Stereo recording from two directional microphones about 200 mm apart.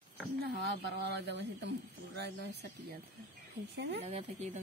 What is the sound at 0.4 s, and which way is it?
A woman's voice, 60° right (ahead or behind).